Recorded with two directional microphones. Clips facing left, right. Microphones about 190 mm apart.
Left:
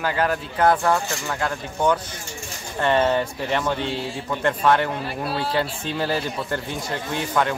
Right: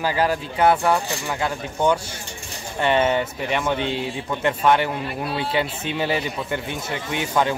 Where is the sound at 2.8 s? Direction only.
20° right (ahead or behind).